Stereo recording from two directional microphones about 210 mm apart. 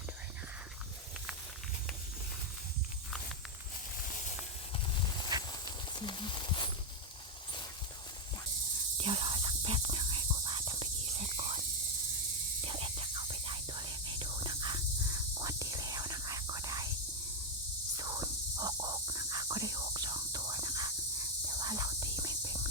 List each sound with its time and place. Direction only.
5.5 s horse: 20° left (ahead or behind)
9.0 s whispering: 25° right (ahead or behind)
12.6 s whispering: 25° right (ahead or behind)
17.9 s whispering: 15° right (ahead or behind)